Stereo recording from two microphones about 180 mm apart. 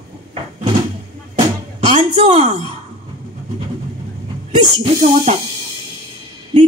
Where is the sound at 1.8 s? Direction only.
35° right (ahead or behind).